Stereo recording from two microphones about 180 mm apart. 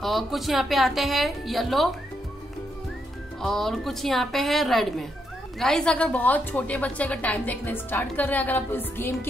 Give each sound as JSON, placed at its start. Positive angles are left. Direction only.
{"t": 0.0, "sound": "a woman's voice", "side_deg": 0}
{"t": 3.4, "sound": "a woman's voice", "side_deg": 0}